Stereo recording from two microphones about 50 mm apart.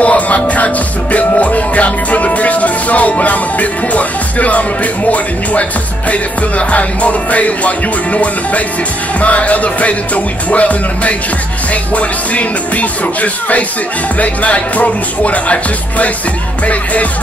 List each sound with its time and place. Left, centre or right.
0.0 s music: left